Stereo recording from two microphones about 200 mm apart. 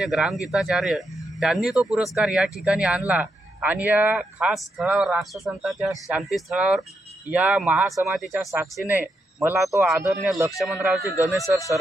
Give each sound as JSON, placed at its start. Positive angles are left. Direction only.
{"t": 0.0, "sound": "speech", "side_deg": -5}
{"t": 11.0, "sound": "speech", "side_deg": 15}